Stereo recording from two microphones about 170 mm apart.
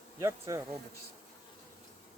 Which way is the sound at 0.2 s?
15° right (ahead or behind).